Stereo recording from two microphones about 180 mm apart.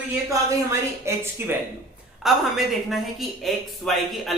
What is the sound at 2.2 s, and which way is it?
A woman's voice, centre (ahead or behind).